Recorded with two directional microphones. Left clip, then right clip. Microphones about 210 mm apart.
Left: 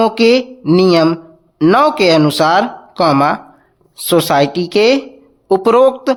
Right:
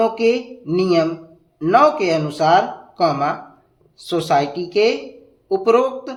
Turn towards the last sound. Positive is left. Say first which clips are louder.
# left 6 dB
turn(degrees=50)  # may be behind; listen again after turning